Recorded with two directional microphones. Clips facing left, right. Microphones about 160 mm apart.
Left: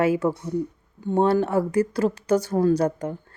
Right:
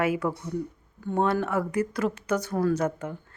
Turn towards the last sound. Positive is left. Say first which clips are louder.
# left 5 dB
turn(degrees=35)  # may be behind; listen again after turning